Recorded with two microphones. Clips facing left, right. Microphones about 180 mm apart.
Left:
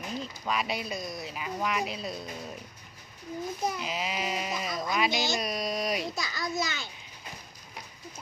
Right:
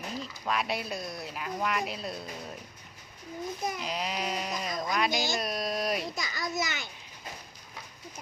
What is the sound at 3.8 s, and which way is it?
Speech, centre (ahead or behind).